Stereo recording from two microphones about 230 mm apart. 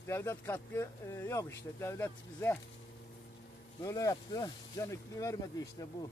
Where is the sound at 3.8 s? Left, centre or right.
Centre.